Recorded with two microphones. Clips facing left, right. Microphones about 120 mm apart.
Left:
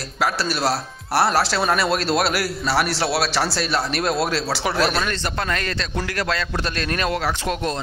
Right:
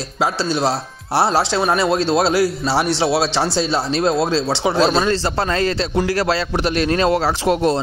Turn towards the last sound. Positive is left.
turn(degrees=-20)  # may be behind; listen again after turning